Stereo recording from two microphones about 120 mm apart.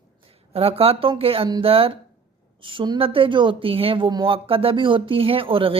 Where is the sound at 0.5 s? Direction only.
55° right (ahead or behind).